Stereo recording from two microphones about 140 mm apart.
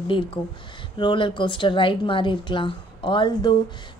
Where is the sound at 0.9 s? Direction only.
35° left (ahead or behind).